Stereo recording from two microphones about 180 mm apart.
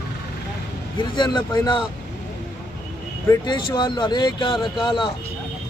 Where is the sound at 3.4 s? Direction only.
25° left (ahead or behind).